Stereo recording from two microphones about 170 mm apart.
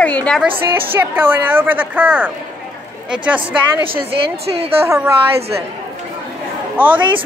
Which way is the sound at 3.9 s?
35° right (ahead or behind).